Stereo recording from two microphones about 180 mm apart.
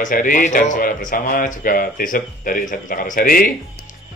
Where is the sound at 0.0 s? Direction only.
45° left (ahead or behind).